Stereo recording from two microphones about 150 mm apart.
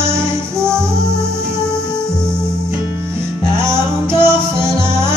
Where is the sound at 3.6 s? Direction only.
15° right (ahead or behind).